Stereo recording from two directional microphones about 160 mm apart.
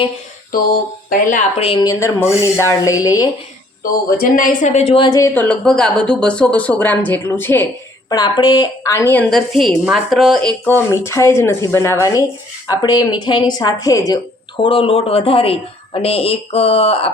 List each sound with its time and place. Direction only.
1.1 s a woman's voice: 55° left (ahead or behind)
1.6 s a woman's voice: 30° left (ahead or behind)
1.9 s speech: 15° left (ahead or behind)
4.2 s a woman's voice: 60° left (ahead or behind); by 5.0 s 40° left (ahead or behind)
5.0 s a woman's voice: 20° left (ahead or behind)
5.3 s speech: 10° left (ahead or behind)
8.1 s a woman's voice: 25° left (ahead or behind)
9.3 s a woman's voice: centre (ahead or behind)
10.7 s a woman's voice: 15° left (ahead or behind); by 17.1 s 40° left (ahead or behind)